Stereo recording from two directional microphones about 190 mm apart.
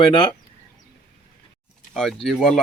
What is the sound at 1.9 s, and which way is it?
Speech, 5° left (ahead or behind).